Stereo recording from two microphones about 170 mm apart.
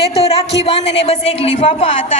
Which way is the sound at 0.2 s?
35° left (ahead or behind).